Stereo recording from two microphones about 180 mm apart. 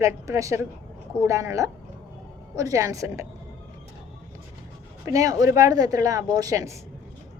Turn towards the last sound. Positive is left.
turn(degrees=-20)  # may be behind; listen again after turning